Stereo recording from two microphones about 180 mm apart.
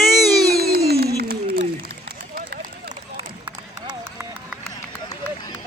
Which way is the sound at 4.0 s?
10° right (ahead or behind).